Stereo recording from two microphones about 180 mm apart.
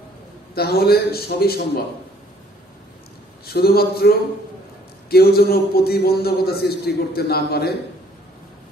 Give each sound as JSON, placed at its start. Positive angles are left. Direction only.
{"t": 0.6, "sound": "a man's voice", "side_deg": 60}
{"t": 3.4, "sound": "a man's voice", "side_deg": 60}
{"t": 5.1, "sound": "a man's voice", "side_deg": 60}